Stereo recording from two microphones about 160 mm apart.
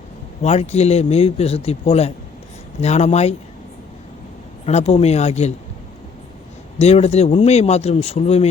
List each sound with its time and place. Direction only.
0.4 s speech: 45° left (ahead or behind)
4.6 s speech: 40° left (ahead or behind)
6.7 s speech: 40° left (ahead or behind)